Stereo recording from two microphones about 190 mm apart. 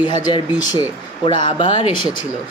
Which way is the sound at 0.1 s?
20° left (ahead or behind).